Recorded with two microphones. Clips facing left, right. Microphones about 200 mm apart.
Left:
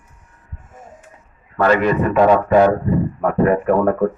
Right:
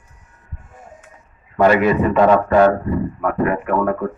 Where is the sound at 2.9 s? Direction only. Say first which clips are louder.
Left 2 dB; 30° left (ahead or behind).